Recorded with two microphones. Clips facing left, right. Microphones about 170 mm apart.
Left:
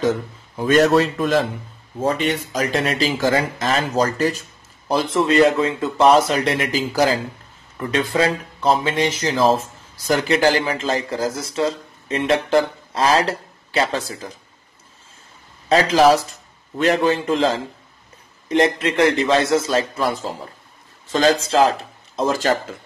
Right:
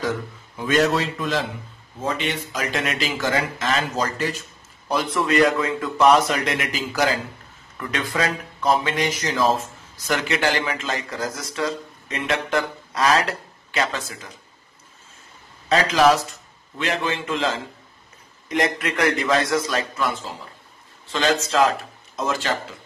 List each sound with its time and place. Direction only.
0.6 s a man's voice: 45° left (ahead or behind)
4.8 s a man's voice: 30° left (ahead or behind)
15.7 s a man's voice: 35° left (ahead or behind)